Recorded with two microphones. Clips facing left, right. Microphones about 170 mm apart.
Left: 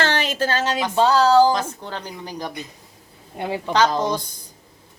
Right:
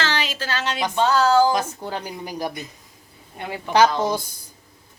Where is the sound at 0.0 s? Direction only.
55° left (ahead or behind).